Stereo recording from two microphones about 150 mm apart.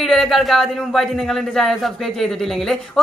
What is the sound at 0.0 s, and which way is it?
Speech, centre (ahead or behind).